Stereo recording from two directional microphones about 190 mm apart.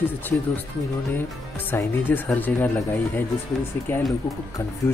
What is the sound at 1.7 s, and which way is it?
Speech, 10° left (ahead or behind).